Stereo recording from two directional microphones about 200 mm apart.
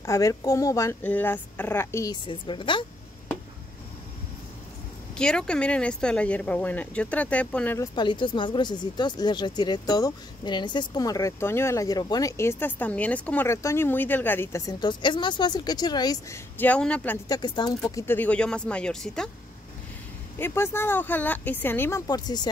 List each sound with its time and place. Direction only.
0.0 s speech: 15° left (ahead or behind)
5.1 s speech: 5° left (ahead or behind)
17.4 s speech: 20° left (ahead or behind); by 19.3 s 5° left (ahead or behind)
20.3 s speech: 10° left (ahead or behind)